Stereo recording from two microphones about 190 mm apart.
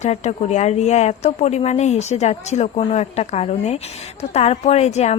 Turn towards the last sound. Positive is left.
turn(degrees=35)  # may be behind; listen again after turning